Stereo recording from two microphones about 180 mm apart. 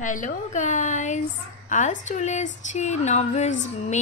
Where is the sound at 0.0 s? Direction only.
45° left (ahead or behind).